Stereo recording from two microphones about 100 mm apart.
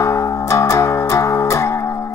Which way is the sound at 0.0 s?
30° left (ahead or behind).